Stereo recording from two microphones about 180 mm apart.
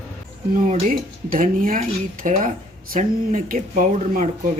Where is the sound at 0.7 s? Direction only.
50° right (ahead or behind).